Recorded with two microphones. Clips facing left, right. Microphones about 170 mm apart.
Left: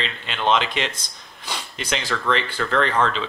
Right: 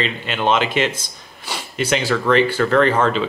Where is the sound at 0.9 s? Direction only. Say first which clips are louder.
Right 5 dB; 10° right (ahead or behind).